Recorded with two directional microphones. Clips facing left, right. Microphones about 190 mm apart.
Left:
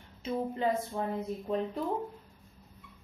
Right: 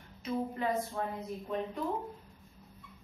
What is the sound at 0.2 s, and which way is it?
Speech, 25° left (ahead or behind).